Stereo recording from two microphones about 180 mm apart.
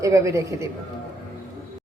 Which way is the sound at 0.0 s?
15° right (ahead or behind).